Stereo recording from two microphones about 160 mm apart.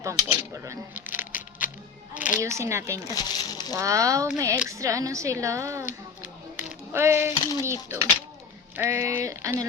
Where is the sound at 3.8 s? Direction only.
20° right (ahead or behind).